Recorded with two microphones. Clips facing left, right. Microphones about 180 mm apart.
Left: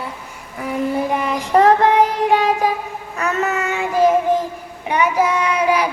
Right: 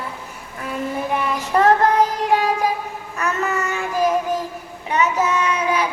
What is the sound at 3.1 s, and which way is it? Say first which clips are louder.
Child singing: left 2 dB; 20° left (ahead or behind).